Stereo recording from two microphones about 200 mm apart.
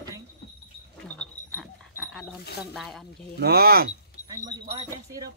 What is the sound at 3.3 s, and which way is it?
Speech, 50° right (ahead or behind).